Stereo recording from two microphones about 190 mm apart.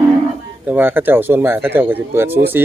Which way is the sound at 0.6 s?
10° right (ahead or behind).